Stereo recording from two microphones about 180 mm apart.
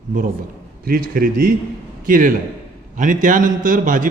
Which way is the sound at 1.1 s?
50° right (ahead or behind).